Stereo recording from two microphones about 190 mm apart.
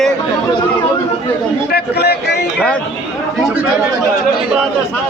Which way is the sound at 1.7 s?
60° left (ahead or behind).